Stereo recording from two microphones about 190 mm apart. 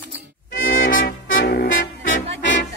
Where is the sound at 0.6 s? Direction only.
45° left (ahead or behind).